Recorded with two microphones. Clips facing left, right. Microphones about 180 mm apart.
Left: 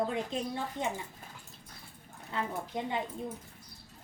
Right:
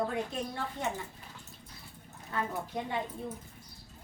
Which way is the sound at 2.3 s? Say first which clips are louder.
Even; 20° left (ahead or behind).